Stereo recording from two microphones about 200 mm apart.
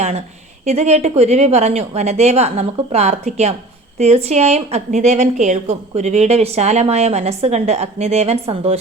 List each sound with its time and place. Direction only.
0.6 s a woman's voice: 35° right (ahead or behind)